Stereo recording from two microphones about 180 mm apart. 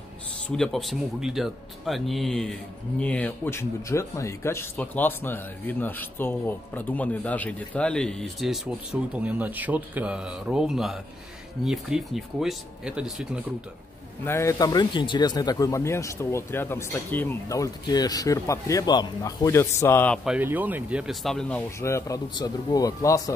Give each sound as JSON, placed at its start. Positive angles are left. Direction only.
{"t": 0.5, "sound": "speech", "side_deg": 5}
{"t": 14.2, "sound": "speech", "side_deg": 15}
{"t": 20.2, "sound": "speech", "side_deg": -10}